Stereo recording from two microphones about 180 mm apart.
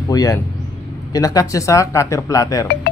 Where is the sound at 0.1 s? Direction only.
20° left (ahead or behind).